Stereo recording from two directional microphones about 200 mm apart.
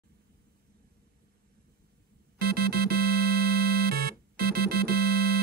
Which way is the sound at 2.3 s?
50° right (ahead or behind).